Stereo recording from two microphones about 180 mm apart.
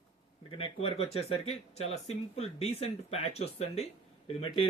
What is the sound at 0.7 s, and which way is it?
Speech, 35° left (ahead or behind).